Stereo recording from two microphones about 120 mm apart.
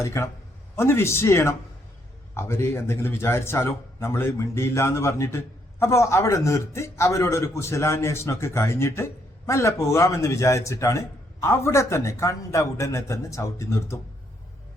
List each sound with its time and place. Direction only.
0.0 s speech: 25° left (ahead or behind)